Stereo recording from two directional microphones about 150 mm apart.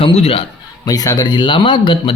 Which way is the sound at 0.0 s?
40° left (ahead or behind).